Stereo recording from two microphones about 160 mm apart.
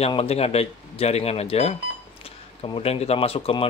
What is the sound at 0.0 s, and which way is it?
Speech, 40° left (ahead or behind).